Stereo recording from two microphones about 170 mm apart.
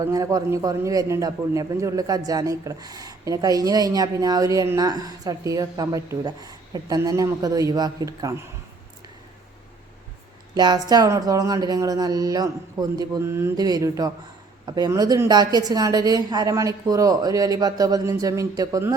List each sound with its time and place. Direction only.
0.0 s a man's voice: 20° right (ahead or behind)
10.5 s a man's voice: 25° right (ahead or behind)